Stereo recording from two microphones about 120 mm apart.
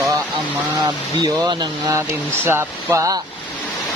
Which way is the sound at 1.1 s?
35° right (ahead or behind).